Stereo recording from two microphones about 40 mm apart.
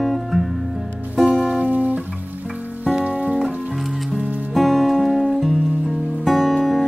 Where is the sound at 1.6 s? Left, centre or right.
Right.